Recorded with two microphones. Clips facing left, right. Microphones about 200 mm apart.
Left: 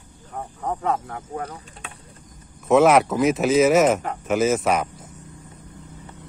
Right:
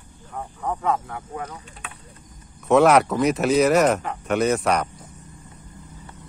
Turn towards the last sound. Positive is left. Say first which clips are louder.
# left 1 dB
turn(degrees=0)  # may be behind; listen again after turning